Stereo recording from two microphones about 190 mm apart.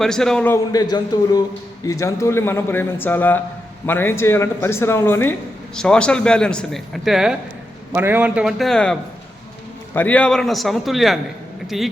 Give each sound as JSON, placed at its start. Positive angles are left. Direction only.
{"t": 0.0, "sound": "speech", "side_deg": 5}
{"t": 0.5, "sound": "a man's voice", "side_deg": 20}